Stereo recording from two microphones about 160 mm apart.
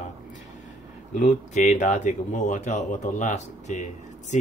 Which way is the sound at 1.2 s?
50° left (ahead or behind).